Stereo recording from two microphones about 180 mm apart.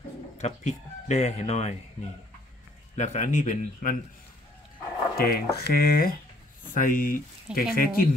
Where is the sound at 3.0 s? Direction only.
45° left (ahead or behind).